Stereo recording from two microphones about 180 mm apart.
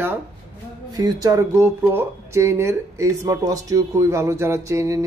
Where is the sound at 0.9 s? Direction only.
20° right (ahead or behind).